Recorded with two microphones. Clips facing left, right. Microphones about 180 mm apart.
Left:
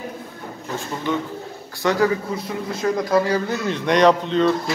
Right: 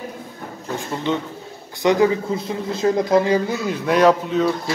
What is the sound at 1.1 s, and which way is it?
Speech, 20° right (ahead or behind).